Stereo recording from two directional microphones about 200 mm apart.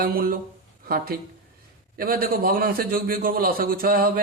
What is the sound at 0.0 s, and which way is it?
A man's voice, 45° right (ahead or behind).